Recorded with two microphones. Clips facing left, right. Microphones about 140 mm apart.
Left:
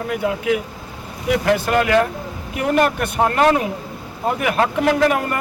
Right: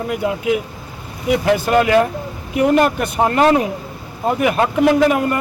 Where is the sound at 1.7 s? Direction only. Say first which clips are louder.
Right 4 dB; 15° right (ahead or behind).